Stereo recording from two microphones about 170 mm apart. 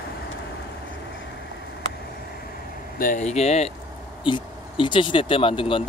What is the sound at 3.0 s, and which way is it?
Speech, 45° left (ahead or behind).